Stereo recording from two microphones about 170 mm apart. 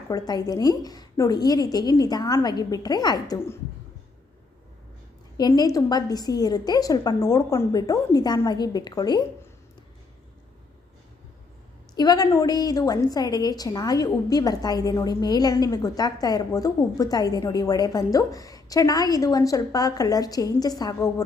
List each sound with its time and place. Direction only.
0.1 s a woman's voice: 20° left (ahead or behind)
5.4 s a woman's voice: 20° left (ahead or behind)
11.9 s a woman's voice: 25° left (ahead or behind)